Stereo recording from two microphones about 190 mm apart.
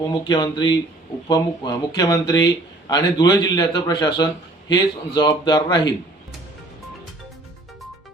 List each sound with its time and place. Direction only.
0.0 s speech: 25° left (ahead or behind)